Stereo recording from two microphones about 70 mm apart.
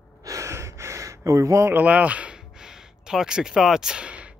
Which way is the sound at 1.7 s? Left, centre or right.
Right.